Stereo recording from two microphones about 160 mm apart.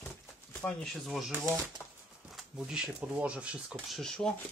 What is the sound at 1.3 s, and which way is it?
Speech, 10° right (ahead or behind).